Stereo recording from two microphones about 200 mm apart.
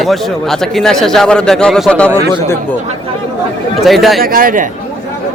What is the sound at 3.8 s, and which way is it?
Speech, centre (ahead or behind).